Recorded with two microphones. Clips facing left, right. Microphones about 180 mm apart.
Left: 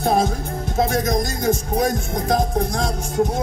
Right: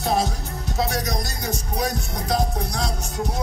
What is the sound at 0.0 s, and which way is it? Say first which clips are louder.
Music: left 4 dB; 50° left (ahead or behind).